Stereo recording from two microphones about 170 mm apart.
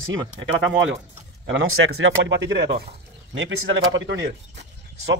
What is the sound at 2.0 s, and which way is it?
Speech, 90° right.